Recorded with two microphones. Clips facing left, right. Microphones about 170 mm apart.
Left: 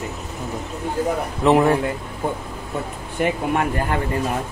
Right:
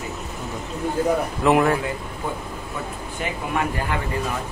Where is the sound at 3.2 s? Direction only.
60° left (ahead or behind).